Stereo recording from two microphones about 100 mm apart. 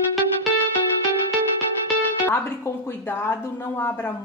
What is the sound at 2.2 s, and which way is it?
A woman's voice, 25° left (ahead or behind).